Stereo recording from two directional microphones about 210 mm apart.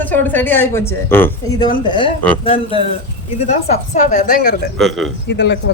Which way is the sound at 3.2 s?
35° left (ahead or behind).